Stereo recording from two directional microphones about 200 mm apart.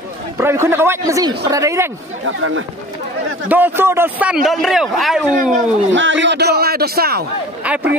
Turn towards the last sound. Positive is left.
turn(degrees=-5)  # may be behind; listen again after turning